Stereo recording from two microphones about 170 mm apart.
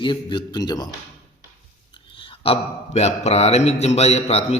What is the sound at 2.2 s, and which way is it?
Speech, 35° left (ahead or behind).